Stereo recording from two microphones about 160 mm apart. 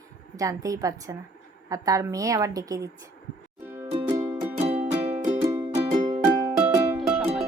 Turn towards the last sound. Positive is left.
turn(degrees=-5)  # may be behind; listen again after turning